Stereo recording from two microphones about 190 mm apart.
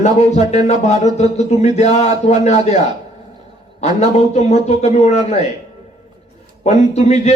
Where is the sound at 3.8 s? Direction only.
35° left (ahead or behind).